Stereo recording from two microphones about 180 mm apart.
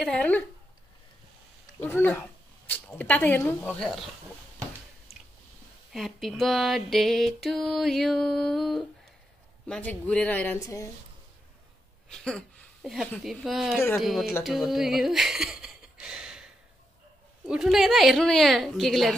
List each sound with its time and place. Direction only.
0.0 s speech: 5° left (ahead or behind)
1.8 s speech: 10° left (ahead or behind)
3.6 s music: centre (ahead or behind)
5.1 s chewing: 35° left (ahead or behind)
5.9 s music: centre (ahead or behind)
9.7 s speech: 5° left (ahead or behind)
12.1 s a woman's voice: 5° left (ahead or behind)
13.9 s music: centre (ahead or behind)
14.4 s speech: centre (ahead or behind)
17.5 s music: centre (ahead or behind)